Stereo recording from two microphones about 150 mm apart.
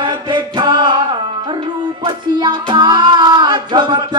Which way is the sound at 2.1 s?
30° right (ahead or behind).